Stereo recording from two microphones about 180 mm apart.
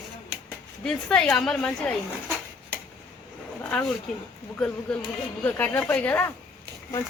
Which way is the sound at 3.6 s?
10° left (ahead or behind).